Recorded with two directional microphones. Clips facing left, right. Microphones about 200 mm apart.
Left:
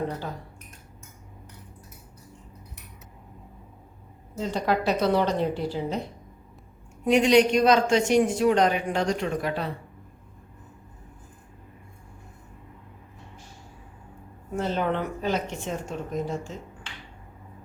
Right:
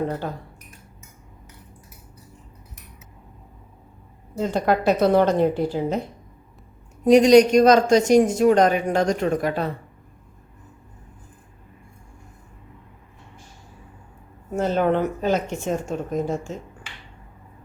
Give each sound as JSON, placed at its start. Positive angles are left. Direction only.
{"t": 4.4, "sound": "speech", "side_deg": -50}
{"t": 7.0, "sound": "speech", "side_deg": -40}
{"t": 14.5, "sound": "speech", "side_deg": -45}